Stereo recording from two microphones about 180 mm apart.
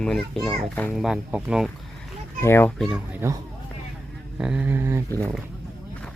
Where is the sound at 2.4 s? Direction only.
15° left (ahead or behind).